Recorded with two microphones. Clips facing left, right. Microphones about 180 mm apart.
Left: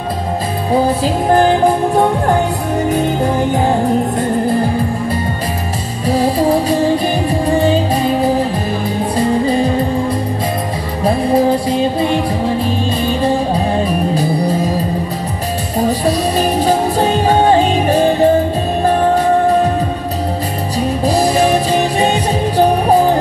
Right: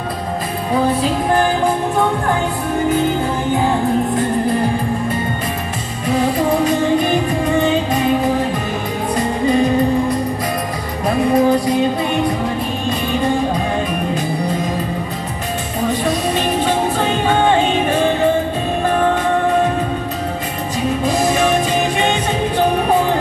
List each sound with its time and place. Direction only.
0.7 s music: 35° left (ahead or behind)
6.0 s music: 35° left (ahead or behind)
15.8 s music: 35° left (ahead or behind)
21.0 s music: 35° left (ahead or behind)